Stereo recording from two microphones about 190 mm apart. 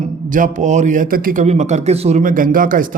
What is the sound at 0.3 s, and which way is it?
A man's voice, 45° right (ahead or behind).